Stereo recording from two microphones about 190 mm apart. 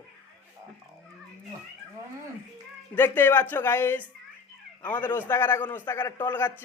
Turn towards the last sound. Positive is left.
turn(degrees=10)  # may be behind; listen again after turning